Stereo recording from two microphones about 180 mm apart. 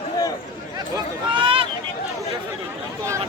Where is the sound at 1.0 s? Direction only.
25° right (ahead or behind).